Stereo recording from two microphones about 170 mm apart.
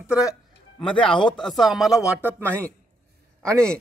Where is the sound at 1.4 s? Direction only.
Centre (ahead or behind).